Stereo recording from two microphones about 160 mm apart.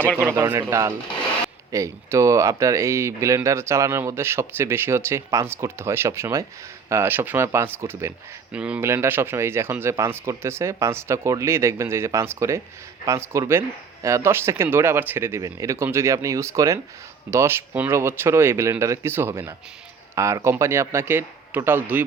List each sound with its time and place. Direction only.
0.3 s speech: 20° right (ahead or behind)